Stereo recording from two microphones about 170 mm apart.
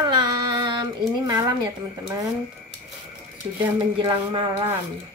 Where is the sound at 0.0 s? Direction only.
25° right (ahead or behind).